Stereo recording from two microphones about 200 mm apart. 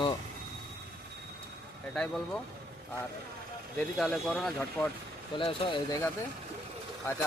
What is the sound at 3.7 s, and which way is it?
Speech, 5° left (ahead or behind).